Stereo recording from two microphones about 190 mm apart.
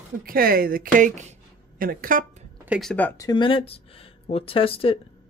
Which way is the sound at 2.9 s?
10° left (ahead or behind).